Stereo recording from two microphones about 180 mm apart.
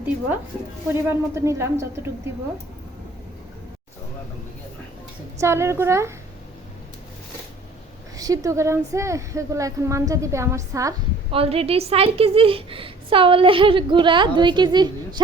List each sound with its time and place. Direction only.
0.9 s speech: 15° right (ahead or behind)
5.4 s speech: 15° right (ahead or behind)
8.1 s speech: 20° right (ahead or behind)
11.3 s a woman's voice: 30° right (ahead or behind)